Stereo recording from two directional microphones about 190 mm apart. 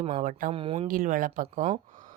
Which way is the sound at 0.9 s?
45° right (ahead or behind).